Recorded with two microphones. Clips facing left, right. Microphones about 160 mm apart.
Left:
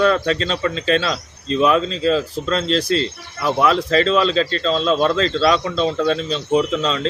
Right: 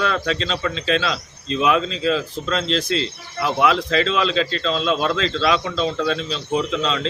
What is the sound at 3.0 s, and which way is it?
Speech, centre (ahead or behind).